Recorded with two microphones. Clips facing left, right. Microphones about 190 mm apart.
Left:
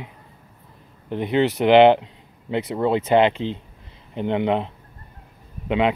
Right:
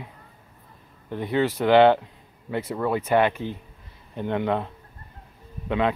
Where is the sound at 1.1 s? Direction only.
20° left (ahead or behind).